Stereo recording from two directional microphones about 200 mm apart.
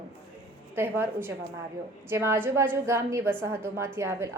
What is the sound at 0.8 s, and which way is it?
A woman's voice, 10° right (ahead or behind).